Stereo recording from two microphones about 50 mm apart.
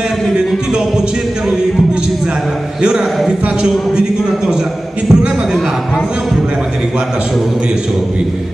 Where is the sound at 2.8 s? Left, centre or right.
Centre.